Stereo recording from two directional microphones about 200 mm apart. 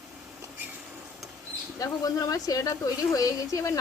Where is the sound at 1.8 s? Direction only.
15° left (ahead or behind).